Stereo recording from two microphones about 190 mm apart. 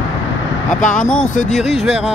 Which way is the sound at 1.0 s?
5° left (ahead or behind).